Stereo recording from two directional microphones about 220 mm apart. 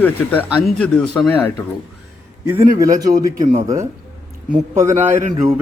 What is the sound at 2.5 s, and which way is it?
A man's voice, 15° right (ahead or behind).